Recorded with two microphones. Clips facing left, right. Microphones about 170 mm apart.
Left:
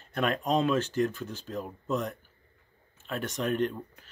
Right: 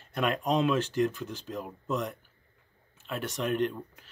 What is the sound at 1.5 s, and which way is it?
Speech, 5° right (ahead or behind).